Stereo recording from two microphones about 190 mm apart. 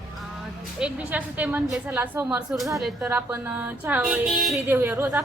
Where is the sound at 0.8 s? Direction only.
5° right (ahead or behind).